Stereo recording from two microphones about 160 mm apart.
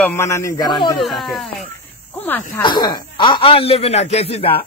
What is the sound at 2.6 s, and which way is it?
A man's voice, 30° left (ahead or behind).